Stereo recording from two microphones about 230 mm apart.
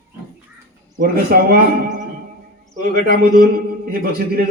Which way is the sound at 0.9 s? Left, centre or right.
Right.